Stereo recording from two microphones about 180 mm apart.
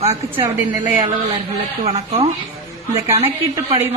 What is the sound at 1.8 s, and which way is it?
Speech, 35° right (ahead or behind).